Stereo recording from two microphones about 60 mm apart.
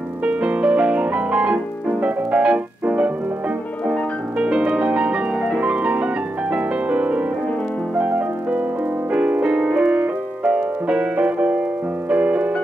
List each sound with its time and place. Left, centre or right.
0.2 s piano: right
1.9 s music: right
6.5 s piano: right
8.0 s music: right